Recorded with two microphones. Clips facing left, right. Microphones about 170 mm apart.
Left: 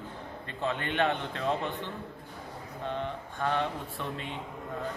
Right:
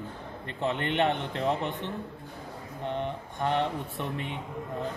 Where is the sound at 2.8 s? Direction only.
20° right (ahead or behind).